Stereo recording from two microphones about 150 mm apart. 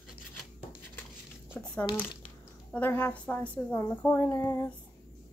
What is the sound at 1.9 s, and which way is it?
Speech, 10° left (ahead or behind).